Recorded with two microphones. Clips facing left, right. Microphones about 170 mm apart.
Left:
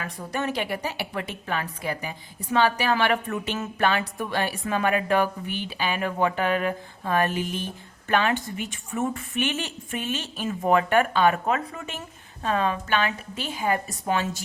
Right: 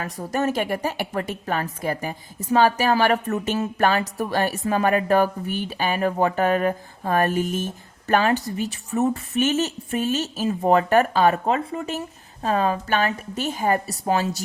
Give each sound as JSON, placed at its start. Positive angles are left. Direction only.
{"t": 0.0, "sound": "a woman's voice", "side_deg": -40}